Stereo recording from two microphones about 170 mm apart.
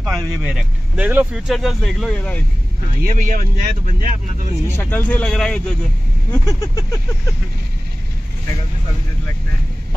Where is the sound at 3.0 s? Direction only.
55° right (ahead or behind).